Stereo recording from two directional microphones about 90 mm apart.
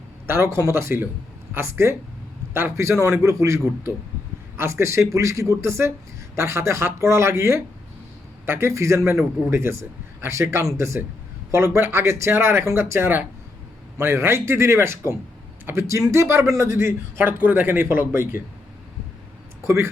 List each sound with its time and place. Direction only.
0.3 s a man's voice: 30° right (ahead or behind)
19.6 s speech: 30° right (ahead or behind)